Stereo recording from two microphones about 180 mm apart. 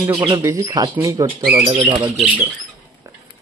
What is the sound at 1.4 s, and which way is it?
Speech, 5° right (ahead or behind).